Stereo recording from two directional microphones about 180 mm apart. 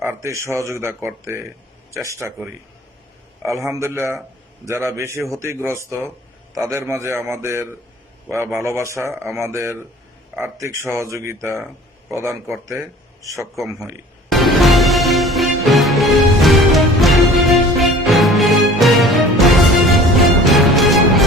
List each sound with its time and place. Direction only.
0.0 s speech: 15° right (ahead or behind)
3.4 s speech: 15° right (ahead or behind)
14.3 s music: centre (ahead or behind)